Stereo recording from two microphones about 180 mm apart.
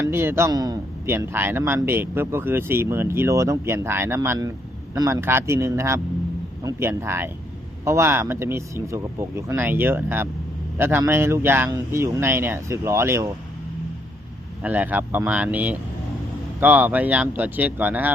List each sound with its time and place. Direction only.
0.0 s a man's voice: 15° right (ahead or behind)
14.6 s a man's voice: 10° right (ahead or behind)